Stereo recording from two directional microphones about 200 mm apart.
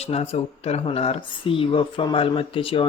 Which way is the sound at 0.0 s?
30° left (ahead or behind).